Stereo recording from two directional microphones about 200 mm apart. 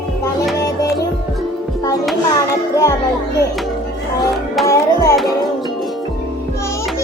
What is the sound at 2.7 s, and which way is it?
Music, 15° left (ahead or behind).